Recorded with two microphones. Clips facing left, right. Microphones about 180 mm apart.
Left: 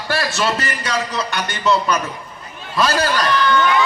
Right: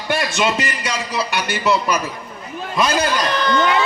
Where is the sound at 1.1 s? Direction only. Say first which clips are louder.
Right 2 dB; centre (ahead or behind).